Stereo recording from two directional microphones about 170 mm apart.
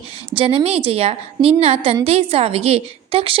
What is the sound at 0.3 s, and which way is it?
A woman's voice, 35° right (ahead or behind).